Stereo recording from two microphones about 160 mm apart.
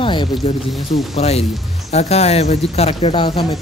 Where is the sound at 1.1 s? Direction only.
40° left (ahead or behind).